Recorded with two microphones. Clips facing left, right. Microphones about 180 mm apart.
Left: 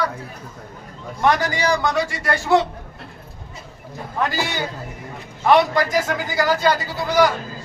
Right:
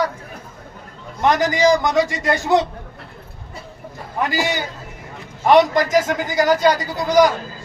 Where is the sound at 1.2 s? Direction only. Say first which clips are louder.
Right 4 dB; 20° right (ahead or behind).